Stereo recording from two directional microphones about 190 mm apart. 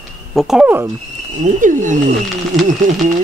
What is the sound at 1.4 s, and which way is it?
Speech, 40° right (ahead or behind).